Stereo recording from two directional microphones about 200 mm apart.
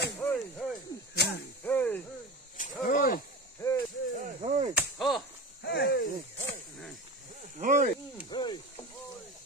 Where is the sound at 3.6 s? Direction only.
15° left (ahead or behind).